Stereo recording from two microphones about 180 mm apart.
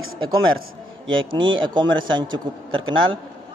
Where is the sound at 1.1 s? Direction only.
25° right (ahead or behind).